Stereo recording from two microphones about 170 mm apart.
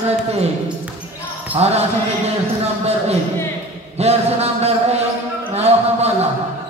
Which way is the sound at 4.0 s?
40° right (ahead or behind).